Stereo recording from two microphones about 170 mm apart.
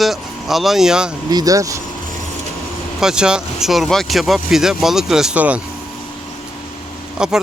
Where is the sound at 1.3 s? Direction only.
20° right (ahead or behind).